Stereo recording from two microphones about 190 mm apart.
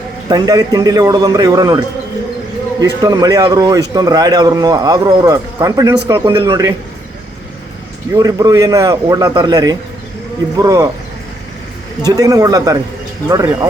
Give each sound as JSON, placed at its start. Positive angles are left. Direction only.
{"t": 0.3, "sound": "speech", "side_deg": -20}
{"t": 2.8, "sound": "speech", "side_deg": -20}
{"t": 8.1, "sound": "speech", "side_deg": -20}
{"t": 12.0, "sound": "speech", "side_deg": -20}